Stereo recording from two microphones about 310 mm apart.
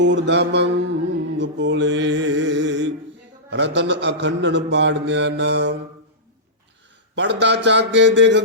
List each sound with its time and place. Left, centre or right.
0.0 s speech: right
1.4 s music: right
3.5 s speech: right
7.2 s speech: right